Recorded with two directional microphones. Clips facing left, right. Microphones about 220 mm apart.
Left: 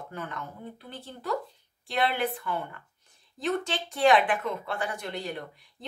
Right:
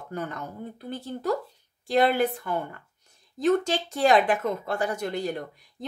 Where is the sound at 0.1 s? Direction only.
40° right (ahead or behind).